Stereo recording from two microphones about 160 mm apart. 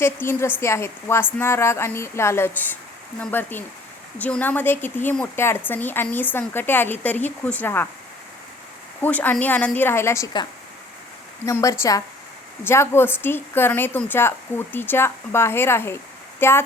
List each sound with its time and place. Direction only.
0.0 s speech: 15° left (ahead or behind)
9.0 s speech: 10° left (ahead or behind)
11.4 s a woman's voice: 20° left (ahead or behind)